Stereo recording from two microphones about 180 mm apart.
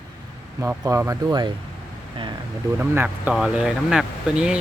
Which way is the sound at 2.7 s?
10° right (ahead or behind).